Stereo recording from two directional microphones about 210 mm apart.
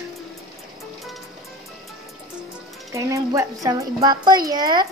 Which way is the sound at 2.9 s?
15° right (ahead or behind).